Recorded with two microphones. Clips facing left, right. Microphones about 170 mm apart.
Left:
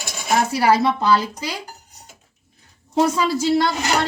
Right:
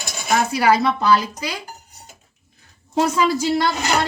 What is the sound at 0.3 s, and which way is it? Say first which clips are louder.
Speech: even; 30° left (ahead or behind).